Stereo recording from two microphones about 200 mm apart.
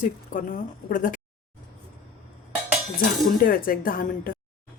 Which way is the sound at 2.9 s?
45° left (ahead or behind).